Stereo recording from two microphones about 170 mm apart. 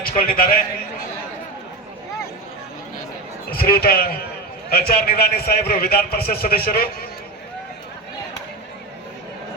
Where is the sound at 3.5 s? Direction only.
65° left (ahead or behind).